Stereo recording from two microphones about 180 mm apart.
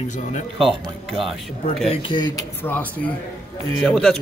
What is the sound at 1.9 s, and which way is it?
Speech, 30° left (ahead or behind).